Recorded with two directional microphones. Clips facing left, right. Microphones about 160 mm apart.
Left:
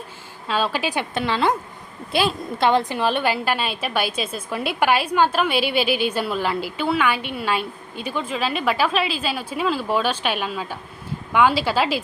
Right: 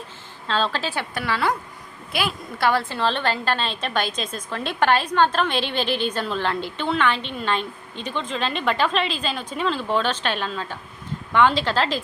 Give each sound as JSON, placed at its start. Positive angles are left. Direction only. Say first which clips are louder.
{"t": 0.4, "sound": "a woman's voice", "louder": "left 1 dB", "side_deg": 10}